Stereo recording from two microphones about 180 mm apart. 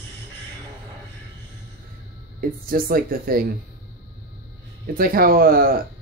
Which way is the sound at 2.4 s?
50° right (ahead or behind).